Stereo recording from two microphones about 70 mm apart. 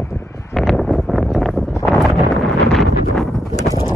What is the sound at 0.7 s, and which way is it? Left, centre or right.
Wind noise, centre.